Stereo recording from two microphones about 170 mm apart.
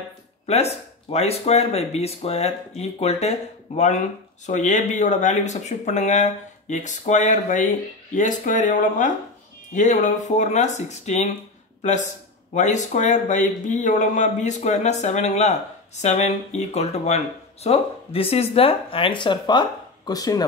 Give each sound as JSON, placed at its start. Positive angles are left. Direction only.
{"t": 0.5, "sound": "a man's voice", "side_deg": 40}